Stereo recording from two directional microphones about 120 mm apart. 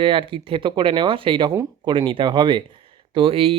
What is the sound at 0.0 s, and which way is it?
Speech, 45° right (ahead or behind).